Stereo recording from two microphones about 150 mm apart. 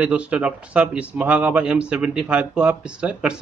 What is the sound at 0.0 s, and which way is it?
Speech, 10° right (ahead or behind).